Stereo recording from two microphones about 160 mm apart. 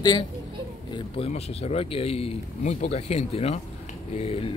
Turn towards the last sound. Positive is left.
turn(degrees=35)  # may be behind; listen again after turning